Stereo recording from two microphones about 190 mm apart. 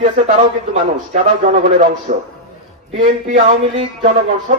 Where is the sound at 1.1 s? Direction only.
40° right (ahead or behind).